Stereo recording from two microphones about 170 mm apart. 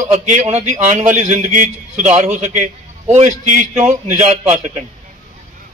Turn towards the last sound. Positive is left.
turn(degrees=-45)  # may be behind; listen again after turning